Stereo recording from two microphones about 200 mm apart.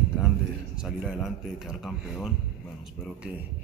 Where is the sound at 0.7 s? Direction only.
Centre (ahead or behind).